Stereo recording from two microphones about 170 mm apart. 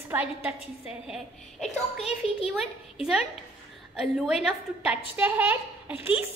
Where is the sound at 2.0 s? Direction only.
35° left (ahead or behind).